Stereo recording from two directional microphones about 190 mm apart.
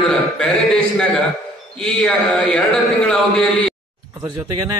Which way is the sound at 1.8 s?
5° left (ahead or behind).